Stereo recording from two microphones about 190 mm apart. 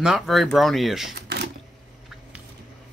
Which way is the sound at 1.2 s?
60° right (ahead or behind).